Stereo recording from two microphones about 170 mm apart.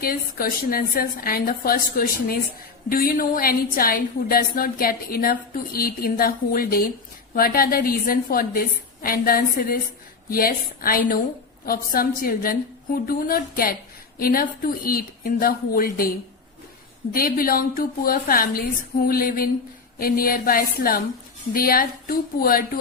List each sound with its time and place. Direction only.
0.0 s a woman's voice: 60° left (ahead or behind)
17.2 s a woman's voice: 60° left (ahead or behind)